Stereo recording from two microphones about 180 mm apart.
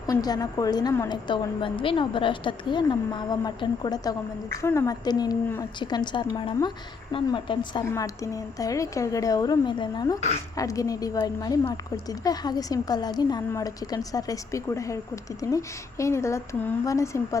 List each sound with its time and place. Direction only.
0.1 s a woman's voice: 20° left (ahead or behind)
10.2 s speech: 35° left (ahead or behind)
10.6 s a woman's voice: 20° left (ahead or behind)